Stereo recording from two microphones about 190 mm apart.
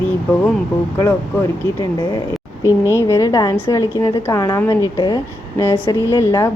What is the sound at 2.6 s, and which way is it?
Speech, 15° right (ahead or behind).